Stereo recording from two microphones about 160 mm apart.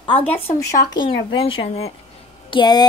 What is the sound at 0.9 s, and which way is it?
Speech, 30° left (ahead or behind).